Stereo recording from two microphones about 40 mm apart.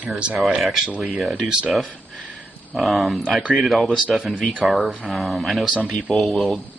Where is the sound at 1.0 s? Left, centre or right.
Centre.